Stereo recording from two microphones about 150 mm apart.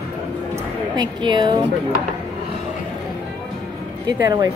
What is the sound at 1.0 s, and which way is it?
Speech, 30° right (ahead or behind).